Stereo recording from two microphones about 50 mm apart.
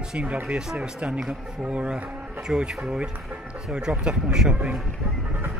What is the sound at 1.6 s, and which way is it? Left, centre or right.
Speech, right.